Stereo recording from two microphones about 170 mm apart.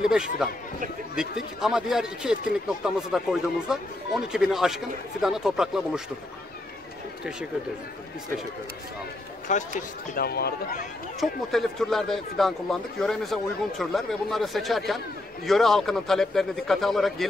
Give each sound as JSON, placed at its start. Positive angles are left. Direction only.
{"t": 0.0, "sound": "speech", "side_deg": -5}
{"t": 9.5, "sound": "speech", "side_deg": 50}
{"t": 11.1, "sound": "speech", "side_deg": 0}